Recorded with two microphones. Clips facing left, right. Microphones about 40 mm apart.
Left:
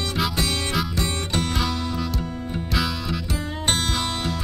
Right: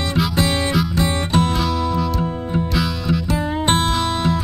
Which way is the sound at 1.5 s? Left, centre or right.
Centre.